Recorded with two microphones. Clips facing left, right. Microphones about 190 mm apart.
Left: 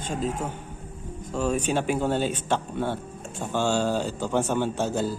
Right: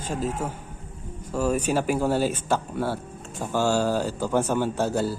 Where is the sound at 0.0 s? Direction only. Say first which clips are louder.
Right 1 dB; 5° right (ahead or behind).